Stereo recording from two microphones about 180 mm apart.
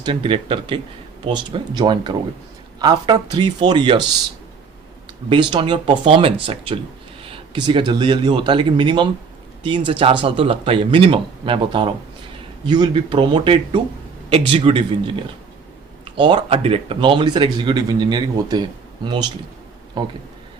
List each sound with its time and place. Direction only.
0.0 s speech: 30° right (ahead or behind)
5.3 s speech: 25° right (ahead or behind)